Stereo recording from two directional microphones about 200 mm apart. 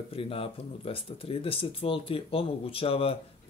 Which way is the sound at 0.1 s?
30° left (ahead or behind).